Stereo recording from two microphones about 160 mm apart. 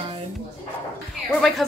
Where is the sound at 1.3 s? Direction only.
Centre (ahead or behind).